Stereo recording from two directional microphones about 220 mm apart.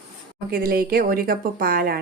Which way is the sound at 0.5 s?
40° right (ahead or behind).